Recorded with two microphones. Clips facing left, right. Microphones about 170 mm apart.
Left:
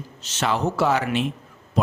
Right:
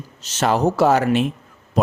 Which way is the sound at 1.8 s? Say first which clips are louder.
Right 4 dB; 45° right (ahead or behind).